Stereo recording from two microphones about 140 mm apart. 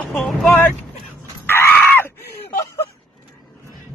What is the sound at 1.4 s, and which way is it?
Screaming, 15° left (ahead or behind).